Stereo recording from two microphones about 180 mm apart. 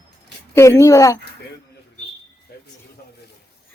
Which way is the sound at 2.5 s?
60° left (ahead or behind).